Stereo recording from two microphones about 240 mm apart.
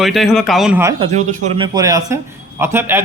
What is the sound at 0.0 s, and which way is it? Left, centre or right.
Speech, centre.